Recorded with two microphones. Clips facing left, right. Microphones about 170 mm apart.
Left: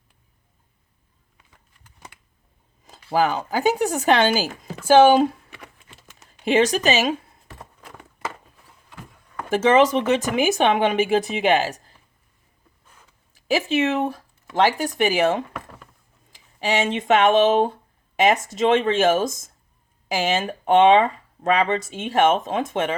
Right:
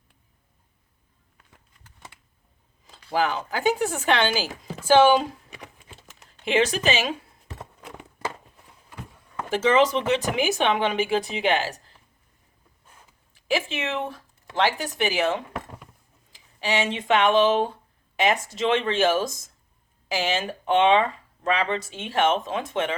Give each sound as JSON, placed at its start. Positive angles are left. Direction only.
{"t": 2.8, "sound": "speech", "side_deg": 45}
{"t": 6.4, "sound": "speech", "side_deg": 40}
{"t": 9.5, "sound": "speech", "side_deg": 50}
{"t": 13.3, "sound": "speech", "side_deg": 40}